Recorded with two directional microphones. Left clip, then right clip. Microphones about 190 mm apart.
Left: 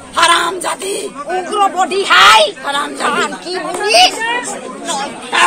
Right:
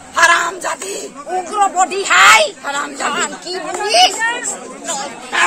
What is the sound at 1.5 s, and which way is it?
Speech, 10° right (ahead or behind).